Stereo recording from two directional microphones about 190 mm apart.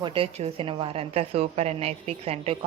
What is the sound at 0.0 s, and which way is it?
A woman's voice, 30° right (ahead or behind).